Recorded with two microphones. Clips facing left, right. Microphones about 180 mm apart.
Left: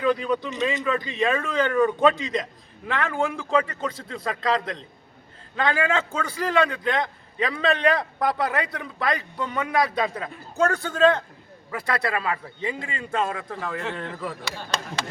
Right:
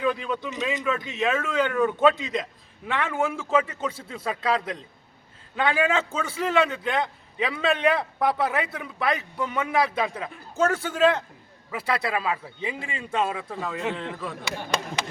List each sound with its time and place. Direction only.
0.0 s a man's voice: 5° right (ahead or behind)